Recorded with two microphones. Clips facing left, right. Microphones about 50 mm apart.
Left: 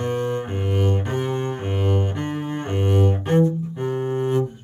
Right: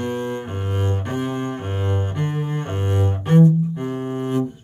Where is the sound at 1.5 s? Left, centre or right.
Centre.